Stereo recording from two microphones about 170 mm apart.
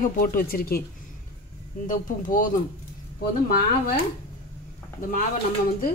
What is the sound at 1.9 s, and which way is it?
Speech, 50° left (ahead or behind).